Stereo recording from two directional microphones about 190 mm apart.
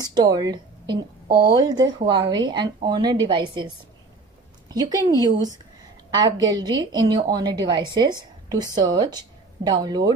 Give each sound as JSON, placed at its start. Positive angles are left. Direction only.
{"t": 0.0, "sound": "a sound", "side_deg": -20}
{"t": 1.5, "sound": "a woman's voice", "side_deg": -20}
{"t": 4.6, "sound": "a woman's voice", "side_deg": -20}